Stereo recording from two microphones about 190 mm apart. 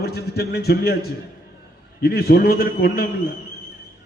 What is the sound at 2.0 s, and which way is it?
A man's voice, 55° left (ahead or behind).